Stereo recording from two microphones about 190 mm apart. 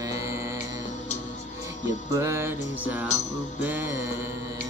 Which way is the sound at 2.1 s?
15° right (ahead or behind).